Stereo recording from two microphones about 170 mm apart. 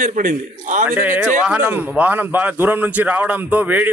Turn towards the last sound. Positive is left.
turn(degrees=-10)  # may be behind; listen again after turning